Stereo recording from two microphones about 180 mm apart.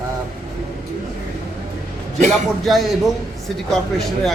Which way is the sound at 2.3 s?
Centre (ahead or behind).